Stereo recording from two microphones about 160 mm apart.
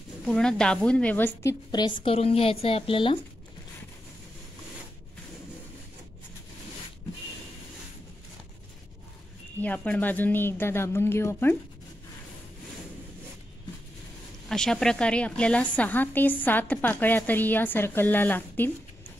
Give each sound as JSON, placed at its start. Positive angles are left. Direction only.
{"t": 0.2, "sound": "a woman's voice", "side_deg": 5}
{"t": 9.6, "sound": "a woman's voice", "side_deg": 10}
{"t": 14.5, "sound": "a woman's voice", "side_deg": 5}